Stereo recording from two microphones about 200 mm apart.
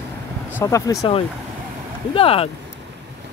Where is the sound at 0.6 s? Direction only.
15° left (ahead or behind).